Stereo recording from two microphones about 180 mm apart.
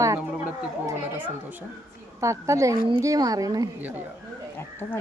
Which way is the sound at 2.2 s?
15° right (ahead or behind).